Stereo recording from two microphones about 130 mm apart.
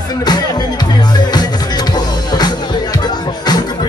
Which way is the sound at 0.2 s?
30° left (ahead or behind).